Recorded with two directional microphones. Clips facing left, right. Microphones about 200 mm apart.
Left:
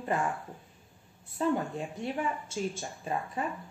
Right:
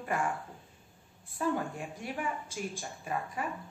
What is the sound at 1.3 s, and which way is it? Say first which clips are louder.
Speech: left 3 dB; 25° left (ahead or behind).